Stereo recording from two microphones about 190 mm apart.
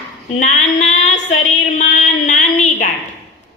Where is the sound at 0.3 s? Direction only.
40° left (ahead or behind).